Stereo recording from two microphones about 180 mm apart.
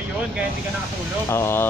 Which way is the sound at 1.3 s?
15° left (ahead or behind).